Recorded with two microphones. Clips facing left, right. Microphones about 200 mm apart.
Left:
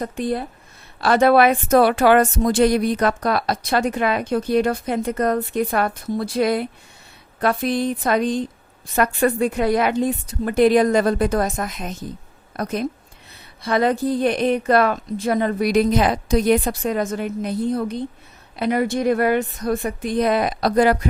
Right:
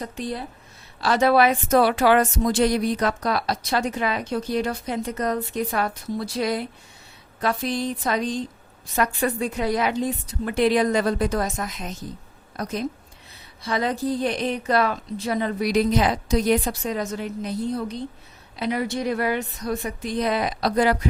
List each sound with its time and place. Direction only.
0.0 s a woman's voice: 55° left (ahead or behind)